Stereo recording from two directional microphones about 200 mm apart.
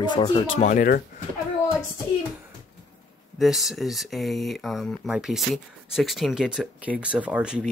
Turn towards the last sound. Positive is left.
turn(degrees=-5)  # may be behind; listen again after turning